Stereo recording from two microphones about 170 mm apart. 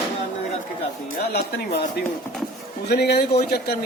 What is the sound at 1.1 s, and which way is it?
Speech, 70° left (ahead or behind).